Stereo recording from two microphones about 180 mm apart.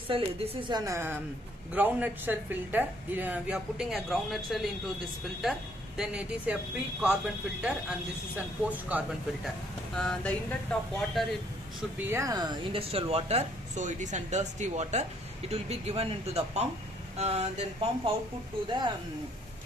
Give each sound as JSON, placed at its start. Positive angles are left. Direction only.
{"t": 0.1, "sound": "a woman's voice", "side_deg": -25}
{"t": 8.6, "sound": "a woman's voice", "side_deg": -10}
{"t": 9.9, "sound": "a woman's voice", "side_deg": 5}
{"t": 12.0, "sound": "speech", "side_deg": -15}
{"t": 18.7, "sound": "speech", "side_deg": -25}